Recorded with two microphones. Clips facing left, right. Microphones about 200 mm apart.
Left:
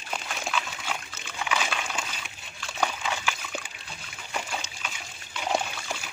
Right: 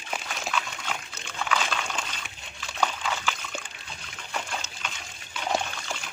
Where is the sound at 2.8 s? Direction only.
5° left (ahead or behind).